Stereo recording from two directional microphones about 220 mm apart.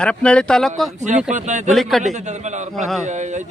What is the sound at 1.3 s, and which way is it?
A man's voice, 35° right (ahead or behind).